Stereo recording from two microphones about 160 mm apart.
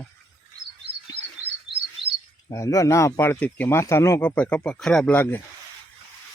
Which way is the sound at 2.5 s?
20° left (ahead or behind).